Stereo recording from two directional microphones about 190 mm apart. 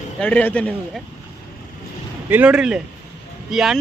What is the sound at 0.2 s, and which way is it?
Speech, 5° left (ahead or behind).